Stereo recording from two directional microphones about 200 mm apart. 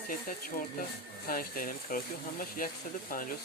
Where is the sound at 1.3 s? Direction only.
45° left (ahead or behind).